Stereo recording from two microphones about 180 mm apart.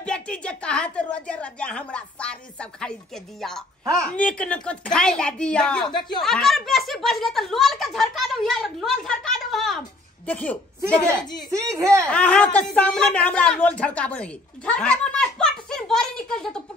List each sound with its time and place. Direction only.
0.0 s speech: 5° left (ahead or behind)
11.5 s speech: 15° right (ahead or behind)
12.1 s a woman's voice: 5° left (ahead or behind)